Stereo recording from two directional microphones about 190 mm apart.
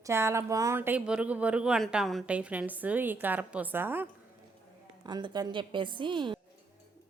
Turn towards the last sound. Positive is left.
turn(degrees=-25)  # may be behind; listen again after turning